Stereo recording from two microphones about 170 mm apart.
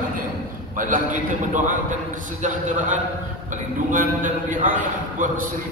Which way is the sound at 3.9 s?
50° right (ahead or behind).